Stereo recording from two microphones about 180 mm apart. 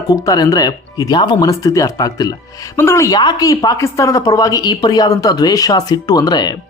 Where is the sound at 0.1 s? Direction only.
20° left (ahead or behind).